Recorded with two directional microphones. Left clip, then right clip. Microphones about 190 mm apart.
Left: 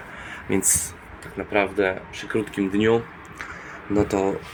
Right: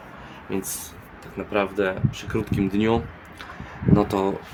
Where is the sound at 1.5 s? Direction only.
10° right (ahead or behind).